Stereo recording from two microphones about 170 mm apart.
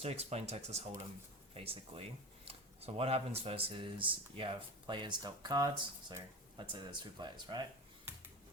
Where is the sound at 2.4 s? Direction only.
35° right (ahead or behind).